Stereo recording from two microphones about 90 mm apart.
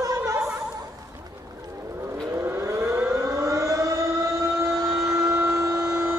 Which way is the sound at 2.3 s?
30° right (ahead or behind).